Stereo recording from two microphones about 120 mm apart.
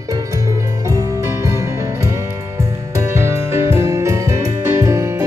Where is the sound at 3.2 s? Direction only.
20° right (ahead or behind).